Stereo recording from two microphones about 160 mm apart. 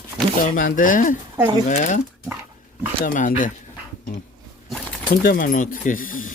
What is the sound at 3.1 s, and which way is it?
Speech, 55° left (ahead or behind).